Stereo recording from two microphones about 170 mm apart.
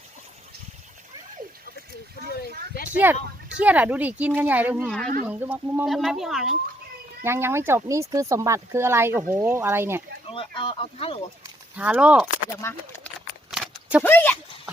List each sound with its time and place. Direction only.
2.7 s speech: 55° left (ahead or behind)
3.6 s speech: 10° right (ahead or behind)
4.9 s speech: 5° left (ahead or behind)
5.2 s speech: 10° right (ahead or behind)
7.3 s speech: 15° right (ahead or behind)
10.2 s speech: 30° left (ahead or behind)
11.8 s speech: 5° right (ahead or behind)
12.6 s speech: 15° left (ahead or behind)
13.5 s a sound: 5° right (ahead or behind)
14.0 s speech: 10° left (ahead or behind)